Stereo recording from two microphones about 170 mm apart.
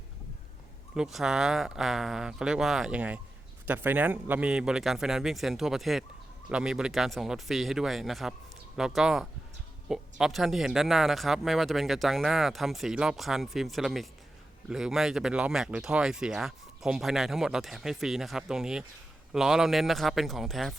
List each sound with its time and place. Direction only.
0.9 s speech: centre (ahead or behind)